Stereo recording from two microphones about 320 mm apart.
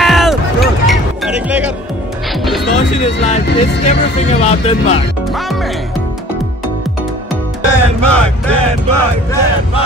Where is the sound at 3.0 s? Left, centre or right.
Left.